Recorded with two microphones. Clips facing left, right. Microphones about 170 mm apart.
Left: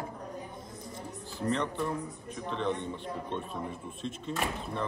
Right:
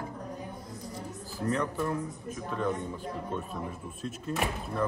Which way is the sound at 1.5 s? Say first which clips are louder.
Right 1 dB; 5° right (ahead or behind).